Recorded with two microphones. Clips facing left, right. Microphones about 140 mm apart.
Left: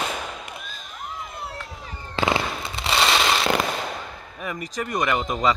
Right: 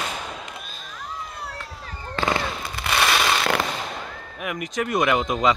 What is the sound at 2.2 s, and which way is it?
Fireworks, 15° left (ahead or behind).